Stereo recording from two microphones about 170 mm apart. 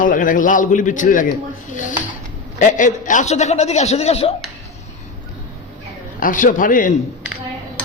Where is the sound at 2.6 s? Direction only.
45° left (ahead or behind).